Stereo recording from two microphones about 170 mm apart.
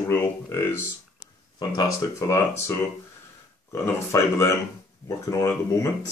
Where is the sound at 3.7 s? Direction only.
15° left (ahead or behind).